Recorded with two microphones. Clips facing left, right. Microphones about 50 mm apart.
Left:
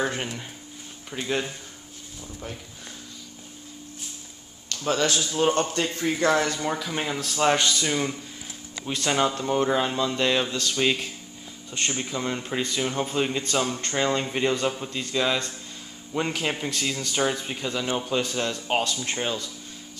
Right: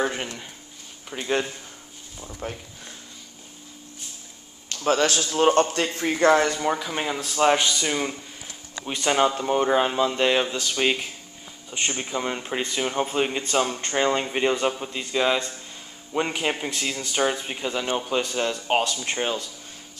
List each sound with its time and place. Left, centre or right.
0.0 s a sound: centre
1.1 s speech: centre
2.4 s a man's voice: right
4.6 s a sound: right
5.0 s a man's voice: right
5.9 s speech: right
6.6 s speech: centre